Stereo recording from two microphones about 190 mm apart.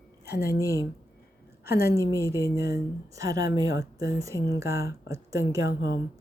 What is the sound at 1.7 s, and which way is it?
Speech, 15° right (ahead or behind).